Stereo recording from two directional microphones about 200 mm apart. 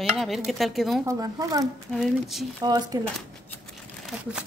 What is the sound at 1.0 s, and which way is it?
Speech, 15° right (ahead or behind).